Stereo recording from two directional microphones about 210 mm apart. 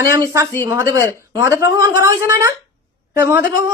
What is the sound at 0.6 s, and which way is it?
Speech, 15° right (ahead or behind).